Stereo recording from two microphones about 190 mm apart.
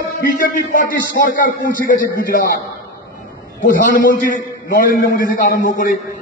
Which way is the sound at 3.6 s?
50° left (ahead or behind).